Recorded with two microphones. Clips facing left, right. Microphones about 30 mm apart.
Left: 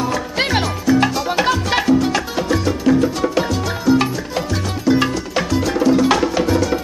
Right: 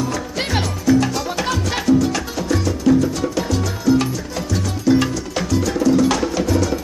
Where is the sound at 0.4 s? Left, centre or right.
Left.